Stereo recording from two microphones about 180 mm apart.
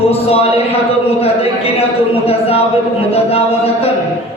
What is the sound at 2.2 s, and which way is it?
Speech, 35° left (ahead or behind).